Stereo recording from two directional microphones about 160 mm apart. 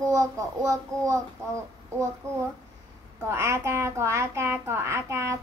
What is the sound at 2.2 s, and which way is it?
A child's voice, 20° right (ahead or behind).